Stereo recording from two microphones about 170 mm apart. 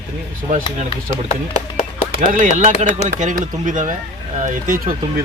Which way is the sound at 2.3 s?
50° right (ahead or behind).